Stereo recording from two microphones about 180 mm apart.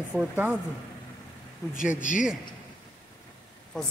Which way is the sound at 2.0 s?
45° left (ahead or behind).